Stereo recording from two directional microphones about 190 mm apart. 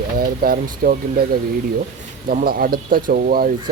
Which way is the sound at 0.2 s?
50° right (ahead or behind).